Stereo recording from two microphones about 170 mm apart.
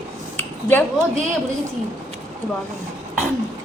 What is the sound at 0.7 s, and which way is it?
Speech, 10° left (ahead or behind).